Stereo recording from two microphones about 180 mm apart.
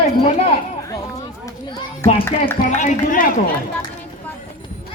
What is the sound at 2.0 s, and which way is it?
Speech, 15° left (ahead or behind).